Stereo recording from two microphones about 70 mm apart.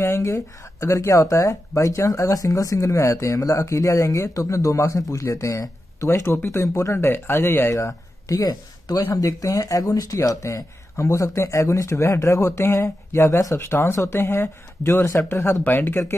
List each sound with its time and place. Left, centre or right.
0.0 s speech: left
7.7 s speech: left
9.1 s speech: left